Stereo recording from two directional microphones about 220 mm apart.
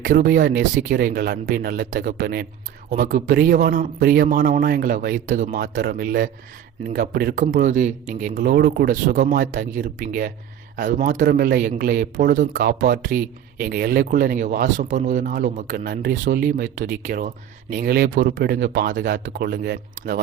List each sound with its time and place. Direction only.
0.0 s speech: 40° right (ahead or behind)